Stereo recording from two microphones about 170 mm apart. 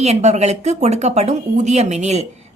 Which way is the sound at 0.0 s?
40° right (ahead or behind).